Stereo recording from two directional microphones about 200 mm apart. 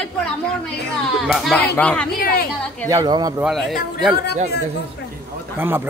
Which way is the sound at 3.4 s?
Centre (ahead or behind).